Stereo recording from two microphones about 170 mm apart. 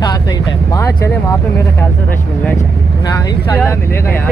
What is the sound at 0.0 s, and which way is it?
Vehicle, 25° left (ahead or behind).